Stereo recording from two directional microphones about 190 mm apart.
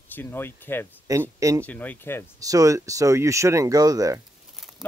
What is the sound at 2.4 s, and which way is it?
Speech, 15° right (ahead or behind).